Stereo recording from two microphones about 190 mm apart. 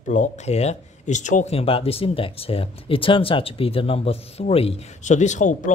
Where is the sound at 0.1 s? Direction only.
40° left (ahead or behind).